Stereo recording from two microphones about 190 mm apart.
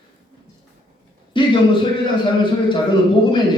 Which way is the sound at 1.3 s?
25° left (ahead or behind).